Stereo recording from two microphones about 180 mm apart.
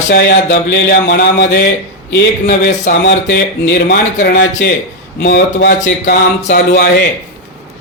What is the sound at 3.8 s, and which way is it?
Speech, 60° left (ahead or behind).